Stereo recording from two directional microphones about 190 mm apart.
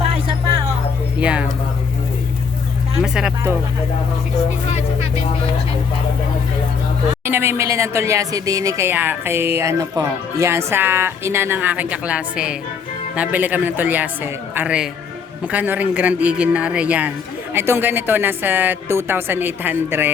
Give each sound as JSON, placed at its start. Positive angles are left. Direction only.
{"t": 1.2, "sound": "speech", "side_deg": -5}
{"t": 3.0, "sound": "speech", "side_deg": -5}
{"t": 7.3, "sound": "speech", "side_deg": -10}